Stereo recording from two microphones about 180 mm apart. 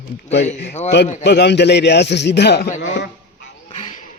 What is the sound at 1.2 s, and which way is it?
Speech, 70° left (ahead or behind).